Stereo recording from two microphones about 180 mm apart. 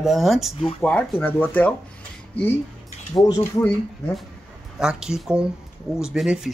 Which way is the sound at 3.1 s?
20° left (ahead or behind).